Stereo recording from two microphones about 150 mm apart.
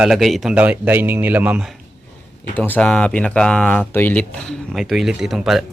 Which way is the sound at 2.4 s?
10° left (ahead or behind).